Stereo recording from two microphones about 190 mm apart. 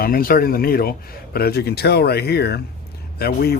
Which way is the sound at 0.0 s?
50° left (ahead or behind).